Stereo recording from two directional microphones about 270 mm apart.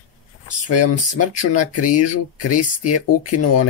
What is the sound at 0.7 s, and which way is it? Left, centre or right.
Speech, left.